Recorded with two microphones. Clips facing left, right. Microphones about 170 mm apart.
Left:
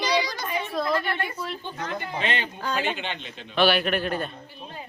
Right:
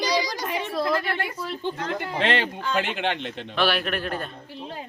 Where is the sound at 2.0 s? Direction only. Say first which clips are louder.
Right 5 dB; 80° right.